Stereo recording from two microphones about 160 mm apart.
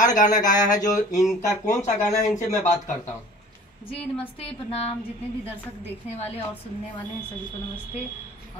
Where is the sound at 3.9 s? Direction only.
35° left (ahead or behind).